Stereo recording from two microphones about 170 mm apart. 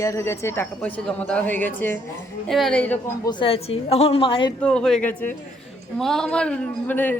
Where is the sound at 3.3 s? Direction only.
30° left (ahead or behind).